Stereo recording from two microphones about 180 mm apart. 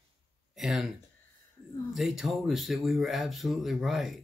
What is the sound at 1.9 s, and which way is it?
Speech, centre (ahead or behind).